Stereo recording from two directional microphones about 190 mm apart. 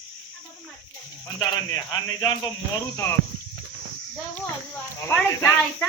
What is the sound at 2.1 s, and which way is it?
Speech, 25° left (ahead or behind).